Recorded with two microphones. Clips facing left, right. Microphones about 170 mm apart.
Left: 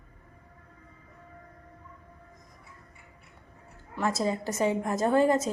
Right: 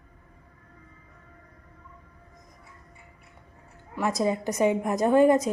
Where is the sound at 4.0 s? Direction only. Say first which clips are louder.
Right 3 dB; 15° right (ahead or behind).